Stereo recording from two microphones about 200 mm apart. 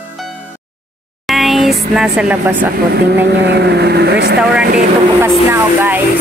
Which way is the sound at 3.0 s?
55° right (ahead or behind).